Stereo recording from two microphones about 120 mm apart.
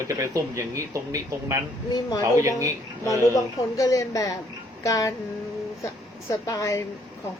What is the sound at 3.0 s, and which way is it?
Speech, 25° left (ahead or behind).